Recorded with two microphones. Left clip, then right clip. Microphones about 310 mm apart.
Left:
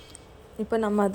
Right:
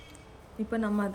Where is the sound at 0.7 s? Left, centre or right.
Centre.